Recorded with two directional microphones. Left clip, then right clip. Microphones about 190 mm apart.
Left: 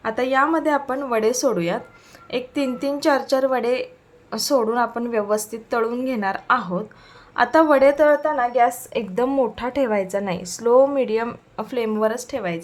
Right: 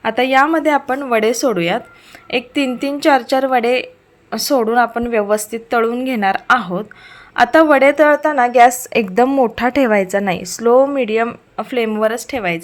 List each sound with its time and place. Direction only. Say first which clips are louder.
0.0 s a woman's voice: right 6 dB; 20° right (ahead or behind)